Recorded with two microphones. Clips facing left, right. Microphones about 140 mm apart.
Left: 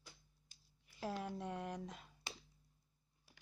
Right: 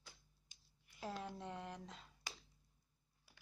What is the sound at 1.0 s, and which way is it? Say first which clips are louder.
Speech: left 4 dB; 10° left (ahead or behind).